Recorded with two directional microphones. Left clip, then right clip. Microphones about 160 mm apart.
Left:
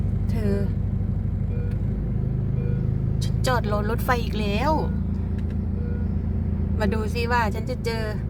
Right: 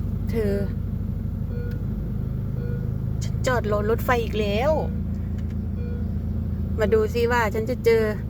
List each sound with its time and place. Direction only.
0.3 s speech: 20° right (ahead or behind)
3.4 s speech: 10° right (ahead or behind)
6.7 s speech: 10° right (ahead or behind)